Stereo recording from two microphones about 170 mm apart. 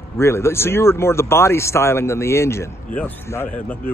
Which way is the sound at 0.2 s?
15° left (ahead or behind).